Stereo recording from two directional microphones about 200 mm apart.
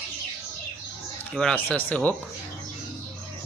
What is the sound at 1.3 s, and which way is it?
Speech, 5° left (ahead or behind).